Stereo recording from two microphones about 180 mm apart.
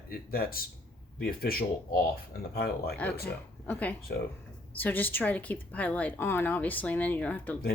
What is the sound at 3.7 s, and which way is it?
Speech, 10° left (ahead or behind).